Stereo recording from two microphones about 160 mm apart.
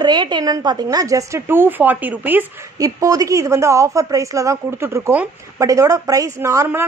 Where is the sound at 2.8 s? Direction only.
20° right (ahead or behind).